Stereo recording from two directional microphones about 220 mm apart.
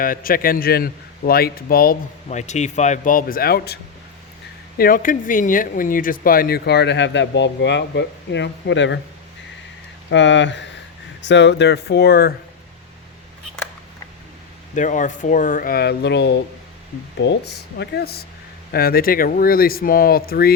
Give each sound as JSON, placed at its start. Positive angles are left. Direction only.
{"t": 0.0, "sound": "a man's voice", "side_deg": 40}
{"t": 4.8, "sound": "speech", "side_deg": 40}
{"t": 10.1, "sound": "speech", "side_deg": 55}
{"t": 14.8, "sound": "a man's voice", "side_deg": 35}